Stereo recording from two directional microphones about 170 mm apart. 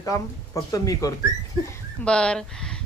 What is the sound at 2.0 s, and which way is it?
Speech, 5° left (ahead or behind).